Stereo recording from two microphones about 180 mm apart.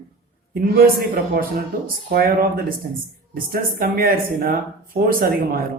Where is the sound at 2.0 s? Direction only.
55° right (ahead or behind).